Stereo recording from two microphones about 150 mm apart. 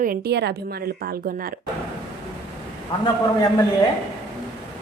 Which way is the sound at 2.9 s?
30° left (ahead or behind).